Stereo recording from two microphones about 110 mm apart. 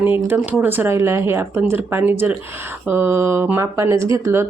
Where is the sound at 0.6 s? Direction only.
15° right (ahead or behind).